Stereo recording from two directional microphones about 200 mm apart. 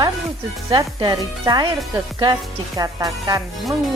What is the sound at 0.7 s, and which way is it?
Speech, 20° right (ahead or behind).